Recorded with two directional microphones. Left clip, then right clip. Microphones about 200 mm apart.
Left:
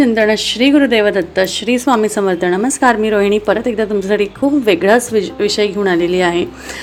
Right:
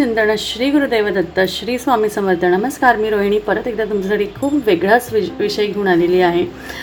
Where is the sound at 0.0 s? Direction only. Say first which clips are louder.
Left 3 dB; 35° left (ahead or behind).